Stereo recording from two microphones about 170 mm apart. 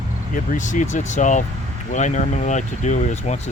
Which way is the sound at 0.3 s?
50° left (ahead or behind).